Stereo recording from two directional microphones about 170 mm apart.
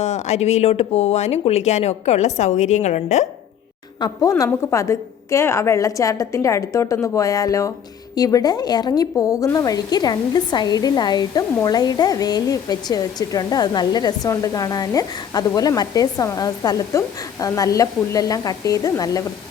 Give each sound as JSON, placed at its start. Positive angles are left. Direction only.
{"t": 0.0, "sound": "speech", "side_deg": 40}
{"t": 4.0, "sound": "a woman's voice", "side_deg": 20}